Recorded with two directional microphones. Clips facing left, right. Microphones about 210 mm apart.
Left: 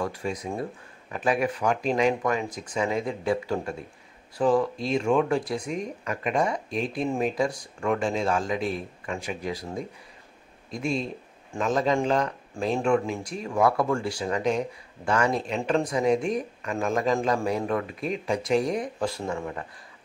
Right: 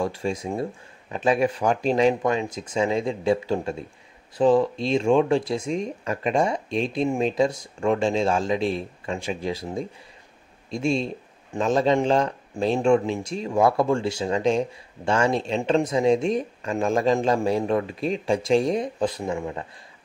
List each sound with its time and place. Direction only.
0.0 s speech: 25° right (ahead or behind)